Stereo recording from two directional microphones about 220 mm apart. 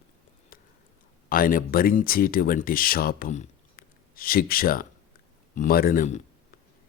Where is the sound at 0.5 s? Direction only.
40° left (ahead or behind).